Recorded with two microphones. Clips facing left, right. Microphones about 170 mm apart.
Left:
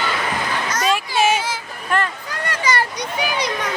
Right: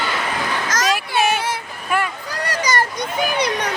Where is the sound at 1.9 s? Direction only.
10° right (ahead or behind).